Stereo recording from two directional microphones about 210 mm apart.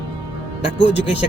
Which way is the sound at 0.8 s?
25° left (ahead or behind).